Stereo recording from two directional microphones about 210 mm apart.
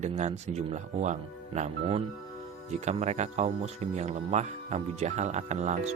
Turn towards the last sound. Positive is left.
turn(degrees=-35)  # may be behind; listen again after turning